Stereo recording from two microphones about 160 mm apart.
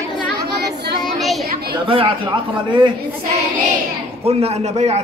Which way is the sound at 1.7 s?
35° right (ahead or behind).